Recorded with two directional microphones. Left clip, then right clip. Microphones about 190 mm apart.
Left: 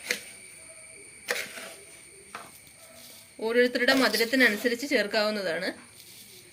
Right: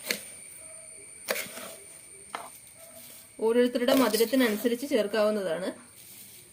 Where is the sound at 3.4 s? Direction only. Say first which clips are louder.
Left 1 dB; 50° right (ahead or behind).